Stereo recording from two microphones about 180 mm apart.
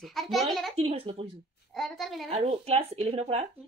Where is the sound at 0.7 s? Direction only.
30° right (ahead or behind).